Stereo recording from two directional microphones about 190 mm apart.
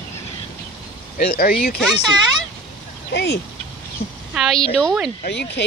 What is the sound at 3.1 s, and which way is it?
Speech, 65° left (ahead or behind).